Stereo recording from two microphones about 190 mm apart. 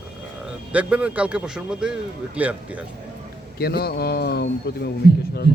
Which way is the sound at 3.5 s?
55° left (ahead or behind).